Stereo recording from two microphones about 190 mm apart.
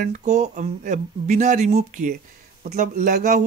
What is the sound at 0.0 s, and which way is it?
Speech, 40° right (ahead or behind).